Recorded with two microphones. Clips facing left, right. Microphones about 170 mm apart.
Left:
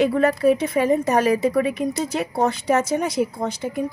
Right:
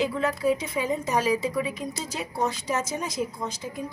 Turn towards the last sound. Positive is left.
turn(degrees=65)  # may be behind; listen again after turning